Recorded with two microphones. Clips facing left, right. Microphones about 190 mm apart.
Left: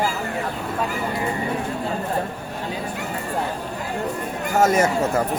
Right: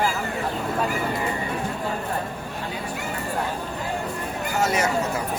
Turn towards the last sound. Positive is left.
turn(degrees=50)  # may be behind; listen again after turning